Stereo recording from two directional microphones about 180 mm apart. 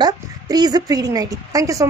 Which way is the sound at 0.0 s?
20° right (ahead or behind).